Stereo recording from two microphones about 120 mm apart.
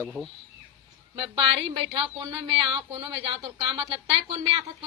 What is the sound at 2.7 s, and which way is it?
Speech, 45° right (ahead or behind).